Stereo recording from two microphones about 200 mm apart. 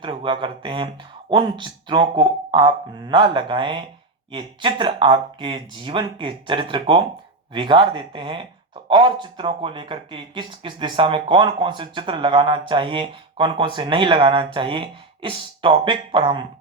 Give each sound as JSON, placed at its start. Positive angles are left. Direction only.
{"t": 0.0, "sound": "speech", "side_deg": -25}